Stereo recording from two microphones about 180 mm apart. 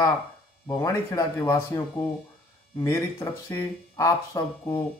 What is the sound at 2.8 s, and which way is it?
Speech, 15° left (ahead or behind).